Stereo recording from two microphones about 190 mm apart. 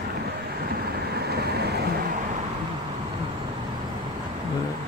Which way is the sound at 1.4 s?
60° right (ahead or behind).